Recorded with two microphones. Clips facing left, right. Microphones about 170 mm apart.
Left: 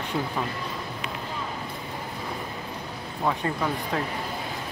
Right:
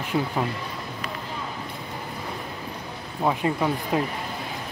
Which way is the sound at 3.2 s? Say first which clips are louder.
Right 3 dB; 15° right (ahead or behind).